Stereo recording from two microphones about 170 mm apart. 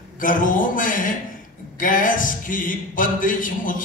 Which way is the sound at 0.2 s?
50° left (ahead or behind).